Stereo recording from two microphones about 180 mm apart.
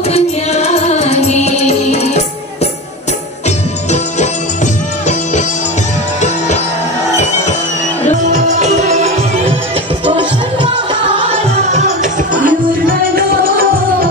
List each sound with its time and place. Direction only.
0.1 s music: 35° left (ahead or behind)
8.3 s music: 40° right (ahead or behind)
11.7 s music: 45° right (ahead or behind)